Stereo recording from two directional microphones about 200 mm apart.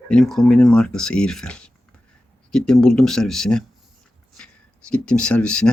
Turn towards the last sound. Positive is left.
turn(degrees=5)  # may be behind; listen again after turning